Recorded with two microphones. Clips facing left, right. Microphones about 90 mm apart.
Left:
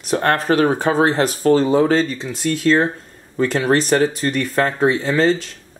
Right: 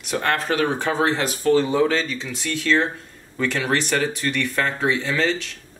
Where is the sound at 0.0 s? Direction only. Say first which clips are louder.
Left 5 dB; 40° left (ahead or behind).